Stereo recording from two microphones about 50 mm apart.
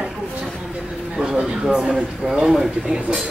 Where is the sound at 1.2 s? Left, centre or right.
Right.